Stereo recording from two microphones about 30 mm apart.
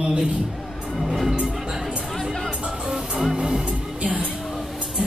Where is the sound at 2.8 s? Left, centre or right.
Right.